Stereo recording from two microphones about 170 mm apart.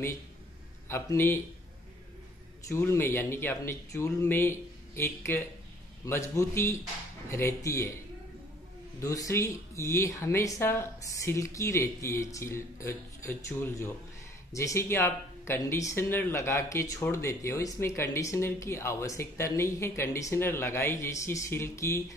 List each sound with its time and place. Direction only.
0.8 s speech: 15° left (ahead or behind)
2.7 s speech: 15° left (ahead or behind)
9.0 s speech: 20° left (ahead or behind)